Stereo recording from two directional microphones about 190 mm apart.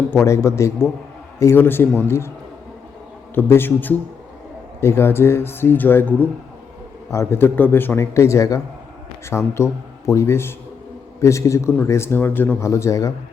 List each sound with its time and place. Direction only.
0.3 s a man's voice: 15° left (ahead or behind)
3.3 s a man's voice: 10° left (ahead or behind)